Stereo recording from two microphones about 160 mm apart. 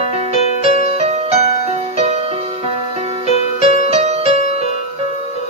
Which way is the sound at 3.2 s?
45° left (ahead or behind).